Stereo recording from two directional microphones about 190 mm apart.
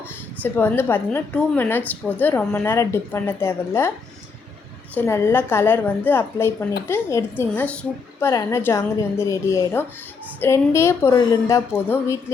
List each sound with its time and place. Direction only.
0.4 s a woman's voice: 10° left (ahead or behind)
4.9 s a woman's voice: 15° left (ahead or behind)
8.3 s a woman's voice: 20° left (ahead or behind)